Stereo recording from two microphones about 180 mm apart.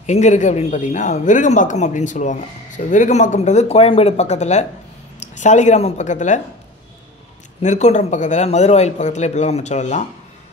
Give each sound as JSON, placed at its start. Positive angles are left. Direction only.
{"t": 0.0, "sound": "a man's voice", "side_deg": 40}
{"t": 7.6, "sound": "a man's voice", "side_deg": 40}